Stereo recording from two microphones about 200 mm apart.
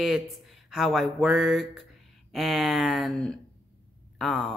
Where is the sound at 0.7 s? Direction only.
Centre (ahead or behind).